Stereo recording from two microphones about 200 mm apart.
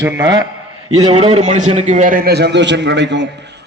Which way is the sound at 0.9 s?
30° right (ahead or behind).